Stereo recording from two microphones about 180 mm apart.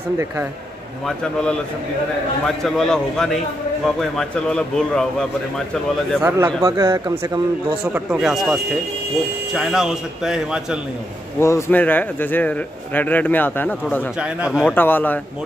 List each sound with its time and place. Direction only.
1.0 s speech: 5° left (ahead or behind)
6.2 s speech: 15° right (ahead or behind)
7.8 s speech: 5° right (ahead or behind)
11.3 s speech: 15° left (ahead or behind)
14.1 s speech: 5° right (ahead or behind)
14.7 s speech: 10° left (ahead or behind)